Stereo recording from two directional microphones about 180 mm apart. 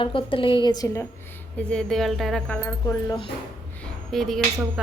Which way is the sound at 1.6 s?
5° left (ahead or behind).